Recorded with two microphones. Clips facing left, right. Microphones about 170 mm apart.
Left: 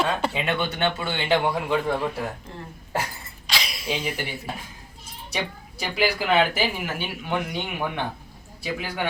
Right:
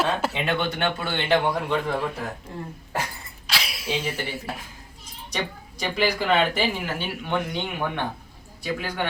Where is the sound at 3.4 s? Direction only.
5° right (ahead or behind).